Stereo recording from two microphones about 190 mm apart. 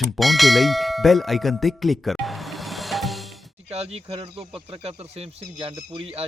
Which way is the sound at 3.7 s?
35° right (ahead or behind).